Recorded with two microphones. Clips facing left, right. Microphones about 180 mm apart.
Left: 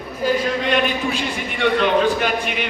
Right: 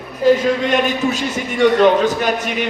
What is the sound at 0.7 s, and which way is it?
A man's voice, 45° right (ahead or behind).